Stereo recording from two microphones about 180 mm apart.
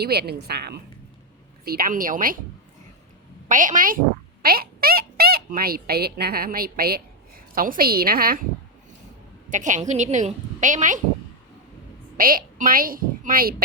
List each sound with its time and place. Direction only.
0.0 s a woman's voice: 60° right (ahead or behind)
3.5 s a woman's voice: 45° right (ahead or behind)
9.5 s a woman's voice: 45° right (ahead or behind)
12.1 s a woman's voice: 50° right (ahead or behind)